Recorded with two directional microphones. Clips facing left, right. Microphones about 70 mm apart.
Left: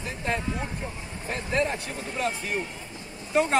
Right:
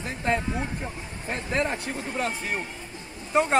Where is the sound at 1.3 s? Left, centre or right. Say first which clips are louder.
Even; right.